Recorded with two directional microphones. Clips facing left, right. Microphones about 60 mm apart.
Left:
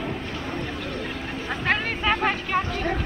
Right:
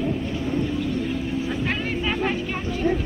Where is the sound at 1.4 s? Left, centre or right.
Left.